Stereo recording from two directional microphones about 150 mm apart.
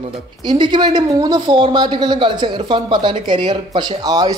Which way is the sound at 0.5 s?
30° right (ahead or behind).